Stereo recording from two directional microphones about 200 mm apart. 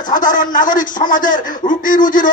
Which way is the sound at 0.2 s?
40° left (ahead or behind).